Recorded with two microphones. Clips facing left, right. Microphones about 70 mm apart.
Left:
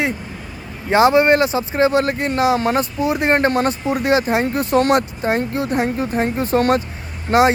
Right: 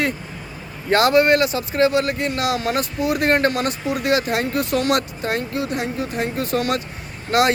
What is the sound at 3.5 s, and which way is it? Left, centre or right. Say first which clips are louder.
Speech: left 4 dB; left.